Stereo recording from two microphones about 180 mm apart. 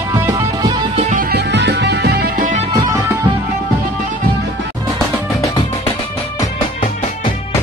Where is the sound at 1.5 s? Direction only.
70° right (ahead or behind).